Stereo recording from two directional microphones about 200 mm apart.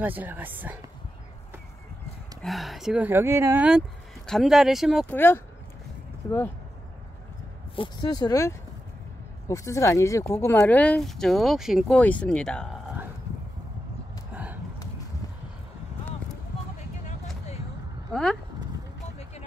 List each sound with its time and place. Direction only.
0.0 s speech: 10° right (ahead or behind)
2.4 s speech: centre (ahead or behind)
5.0 s speech: 10° left (ahead or behind)
7.7 s speech: 25° left (ahead or behind); by 12.6 s 5° left (ahead or behind)
14.3 s a sound: 10° right (ahead or behind)
18.1 s speech: centre (ahead or behind)